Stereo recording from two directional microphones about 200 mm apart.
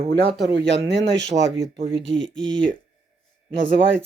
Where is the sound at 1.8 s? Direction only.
25° right (ahead or behind).